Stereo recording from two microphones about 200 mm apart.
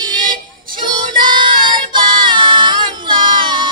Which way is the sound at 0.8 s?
25° right (ahead or behind).